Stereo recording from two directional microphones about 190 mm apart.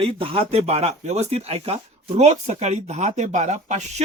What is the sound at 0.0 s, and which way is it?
Speech, 30° right (ahead or behind).